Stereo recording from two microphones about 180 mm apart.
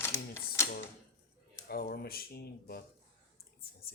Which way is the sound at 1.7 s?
60° left (ahead or behind).